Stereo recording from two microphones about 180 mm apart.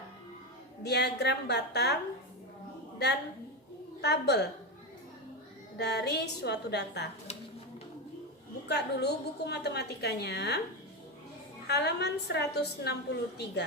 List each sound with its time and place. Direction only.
0.8 s a woman's voice: 65° left (ahead or behind)
4.0 s a woman's voice: 65° left (ahead or behind)
5.7 s a woman's voice: 65° left (ahead or behind)
8.6 s a woman's voice: 65° left (ahead or behind)
11.7 s a woman's voice: 65° left (ahead or behind)